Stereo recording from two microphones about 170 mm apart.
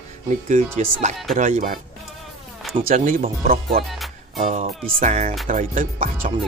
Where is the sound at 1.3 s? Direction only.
50° right (ahead or behind).